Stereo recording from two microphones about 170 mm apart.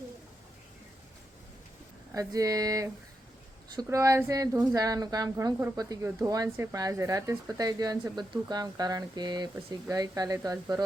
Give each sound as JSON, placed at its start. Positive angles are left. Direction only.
{"t": 2.1, "sound": "speech", "side_deg": -20}